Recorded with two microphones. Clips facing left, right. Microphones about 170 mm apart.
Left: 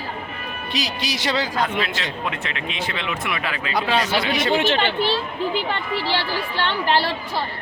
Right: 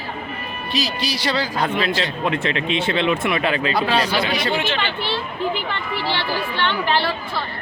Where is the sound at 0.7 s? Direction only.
20° left (ahead or behind).